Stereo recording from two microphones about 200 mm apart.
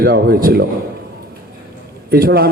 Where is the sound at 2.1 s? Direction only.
50° right (ahead or behind).